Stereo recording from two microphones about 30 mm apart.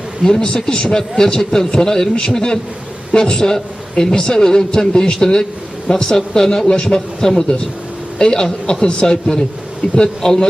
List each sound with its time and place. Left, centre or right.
0.2 s a man's voice: left
7.2 s a man's voice: centre
9.8 s speech: left
10.2 s a man's voice: centre